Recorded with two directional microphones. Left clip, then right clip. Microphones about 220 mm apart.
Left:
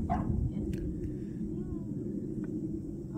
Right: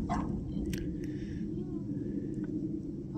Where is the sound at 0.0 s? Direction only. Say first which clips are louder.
Left 1 dB; 50° right (ahead or behind).